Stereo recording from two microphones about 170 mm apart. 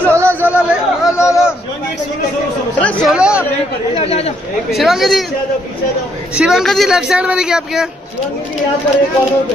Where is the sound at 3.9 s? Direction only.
35° left (ahead or behind).